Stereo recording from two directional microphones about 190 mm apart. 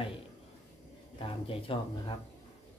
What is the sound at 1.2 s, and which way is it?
Speech, 30° left (ahead or behind).